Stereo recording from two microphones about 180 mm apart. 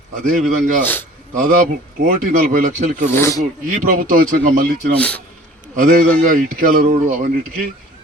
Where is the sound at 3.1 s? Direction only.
15° left (ahead or behind).